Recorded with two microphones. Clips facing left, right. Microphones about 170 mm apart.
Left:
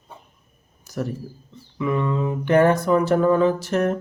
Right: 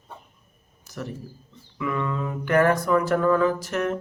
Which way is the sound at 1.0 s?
45° left (ahead or behind).